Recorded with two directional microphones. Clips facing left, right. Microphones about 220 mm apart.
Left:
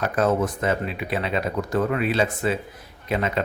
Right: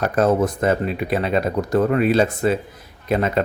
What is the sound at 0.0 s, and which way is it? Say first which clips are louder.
A man's voice: right 4 dB; 40° right (ahead or behind).